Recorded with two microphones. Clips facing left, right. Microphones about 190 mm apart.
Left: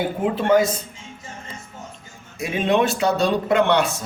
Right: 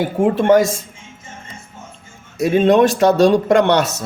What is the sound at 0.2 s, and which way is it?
Speech, 45° right (ahead or behind).